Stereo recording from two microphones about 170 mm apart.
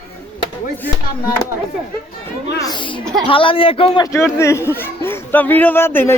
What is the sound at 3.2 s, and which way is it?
Speech, 30° left (ahead or behind).